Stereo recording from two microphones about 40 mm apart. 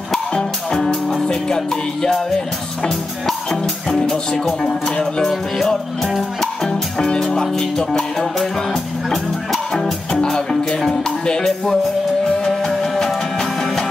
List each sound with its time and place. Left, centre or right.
0.3 s music: centre
0.7 s music: centre
1.2 s speech: centre
6.0 s music: centre
6.6 s music: centre
7.4 s speech: centre
8.6 s music: centre
10.7 s speech: centre
12.4 s music: centre